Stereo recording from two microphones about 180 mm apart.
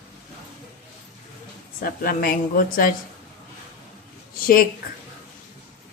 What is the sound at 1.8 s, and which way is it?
A woman's voice, 55° left (ahead or behind).